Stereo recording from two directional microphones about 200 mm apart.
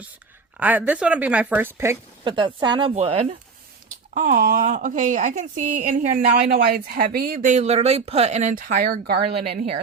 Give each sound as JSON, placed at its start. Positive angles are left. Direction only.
{"t": 0.5, "sound": "a woman's voice", "side_deg": -10}
{"t": 2.2, "sound": "speech", "side_deg": -25}
{"t": 4.1, "sound": "speech", "side_deg": -45}